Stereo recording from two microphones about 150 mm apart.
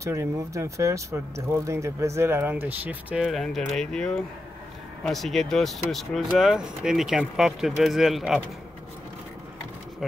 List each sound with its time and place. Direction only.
0.0 s speech: 20° right (ahead or behind); by 8.4 s centre (ahead or behind)